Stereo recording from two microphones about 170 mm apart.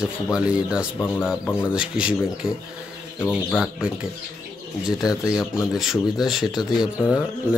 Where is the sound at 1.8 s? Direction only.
5° right (ahead or behind).